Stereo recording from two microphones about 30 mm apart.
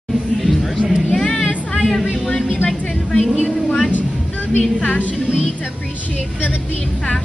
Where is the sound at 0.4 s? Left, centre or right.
Centre.